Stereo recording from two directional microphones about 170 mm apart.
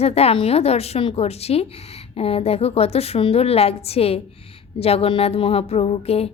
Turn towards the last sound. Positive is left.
turn(degrees=35)  # may be behind; listen again after turning